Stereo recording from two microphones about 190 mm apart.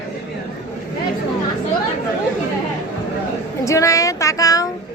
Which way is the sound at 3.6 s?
15° left (ahead or behind).